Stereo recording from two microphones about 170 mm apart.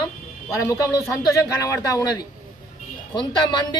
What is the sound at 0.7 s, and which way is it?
Speech, 20° left (ahead or behind).